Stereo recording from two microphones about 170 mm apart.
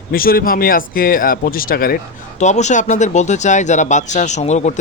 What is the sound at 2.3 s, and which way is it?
Speech, 45° left (ahead or behind).